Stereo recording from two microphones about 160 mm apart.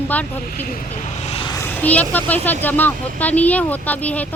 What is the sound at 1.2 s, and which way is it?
Vehicle, 35° left (ahead or behind).